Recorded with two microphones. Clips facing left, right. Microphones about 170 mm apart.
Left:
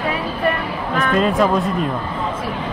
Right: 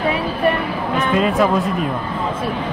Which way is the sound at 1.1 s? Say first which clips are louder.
Even; 5° right (ahead or behind).